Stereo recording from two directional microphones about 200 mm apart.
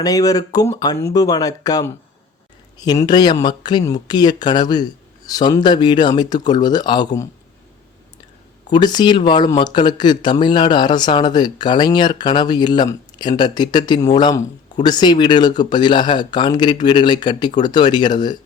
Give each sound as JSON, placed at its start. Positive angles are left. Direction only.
{"t": 0.0, "sound": "speech", "side_deg": 15}
{"t": 8.6, "sound": "speech", "side_deg": 20}